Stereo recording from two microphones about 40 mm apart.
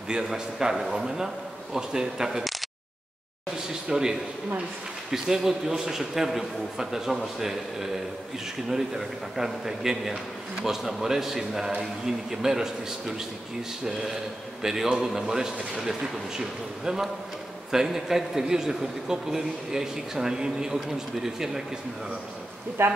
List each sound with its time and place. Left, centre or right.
0.1 s a man's voice: centre
3.5 s a man's voice: centre
22.8 s speech: right